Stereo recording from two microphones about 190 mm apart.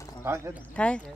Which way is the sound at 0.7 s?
5° left (ahead or behind).